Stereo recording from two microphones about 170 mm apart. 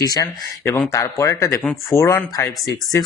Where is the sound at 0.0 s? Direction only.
25° left (ahead or behind).